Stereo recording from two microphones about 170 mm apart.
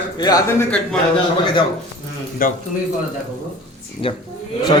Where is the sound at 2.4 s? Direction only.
55° left (ahead or behind).